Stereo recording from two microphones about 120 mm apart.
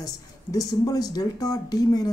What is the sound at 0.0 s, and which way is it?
Speech, 30° left (ahead or behind).